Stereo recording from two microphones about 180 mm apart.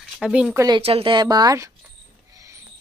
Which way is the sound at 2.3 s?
15° right (ahead or behind).